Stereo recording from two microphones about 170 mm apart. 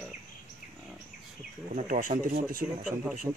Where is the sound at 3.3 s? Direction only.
10° right (ahead or behind).